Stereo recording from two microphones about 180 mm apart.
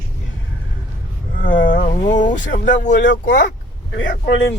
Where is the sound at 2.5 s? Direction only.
45° left (ahead or behind).